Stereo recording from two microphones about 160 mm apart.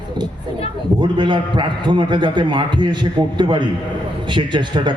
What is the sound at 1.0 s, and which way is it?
A man's voice, 30° right (ahead or behind).